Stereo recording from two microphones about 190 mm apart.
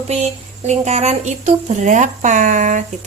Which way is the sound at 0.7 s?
35° right (ahead or behind).